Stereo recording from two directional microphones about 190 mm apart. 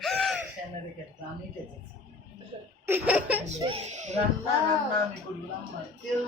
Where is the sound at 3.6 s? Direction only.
30° right (ahead or behind).